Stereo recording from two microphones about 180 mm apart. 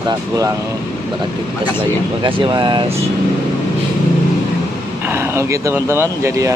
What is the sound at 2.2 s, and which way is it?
Speech, 25° right (ahead or behind).